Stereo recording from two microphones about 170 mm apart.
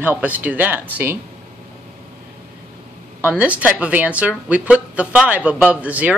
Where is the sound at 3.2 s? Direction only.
10° right (ahead or behind).